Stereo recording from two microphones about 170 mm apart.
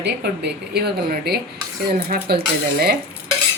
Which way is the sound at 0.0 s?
75° right (ahead or behind).